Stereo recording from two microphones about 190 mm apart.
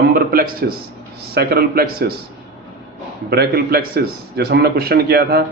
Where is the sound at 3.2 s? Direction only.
55° right (ahead or behind).